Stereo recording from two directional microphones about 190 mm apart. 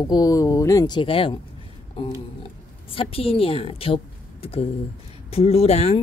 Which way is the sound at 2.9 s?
30° left (ahead or behind).